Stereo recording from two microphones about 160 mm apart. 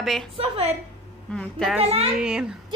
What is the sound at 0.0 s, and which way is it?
Speech, centre (ahead or behind).